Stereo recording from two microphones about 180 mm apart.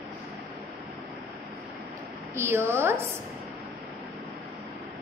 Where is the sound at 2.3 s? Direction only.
15° right (ahead or behind).